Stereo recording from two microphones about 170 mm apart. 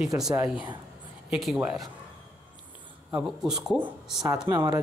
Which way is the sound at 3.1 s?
5° right (ahead or behind).